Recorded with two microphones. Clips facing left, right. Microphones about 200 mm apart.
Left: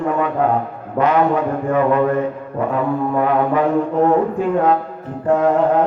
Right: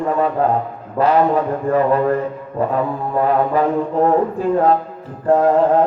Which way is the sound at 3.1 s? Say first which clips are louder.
Right 2 dB; 35° right (ahead or behind).